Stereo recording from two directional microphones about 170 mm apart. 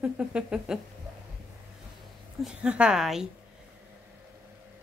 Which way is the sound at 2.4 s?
5° right (ahead or behind).